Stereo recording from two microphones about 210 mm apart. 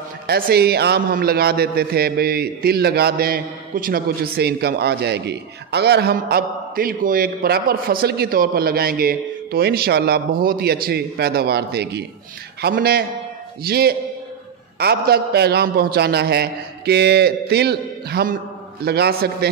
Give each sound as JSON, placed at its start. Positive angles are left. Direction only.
{"t": 0.3, "sound": "a man's voice", "side_deg": -50}